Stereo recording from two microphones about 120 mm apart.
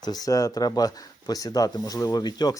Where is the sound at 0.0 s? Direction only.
35° left (ahead or behind).